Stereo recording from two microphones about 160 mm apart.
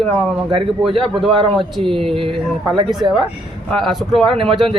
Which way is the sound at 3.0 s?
35° right (ahead or behind).